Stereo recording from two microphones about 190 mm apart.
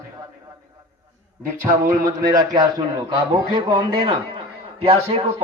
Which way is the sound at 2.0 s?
20° right (ahead or behind).